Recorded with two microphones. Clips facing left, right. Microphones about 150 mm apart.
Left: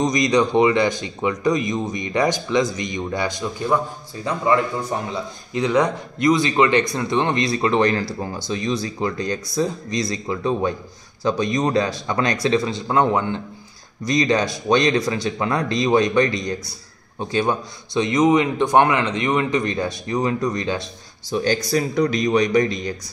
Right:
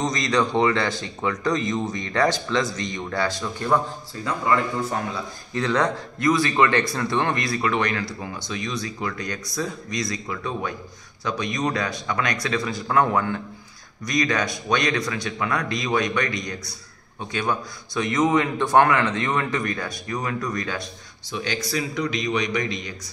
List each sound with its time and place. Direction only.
0.0 s a man's voice: 15° left (ahead or behind)
5.1 s a man's voice: 15° left (ahead or behind)
21.3 s speech: 40° left (ahead or behind)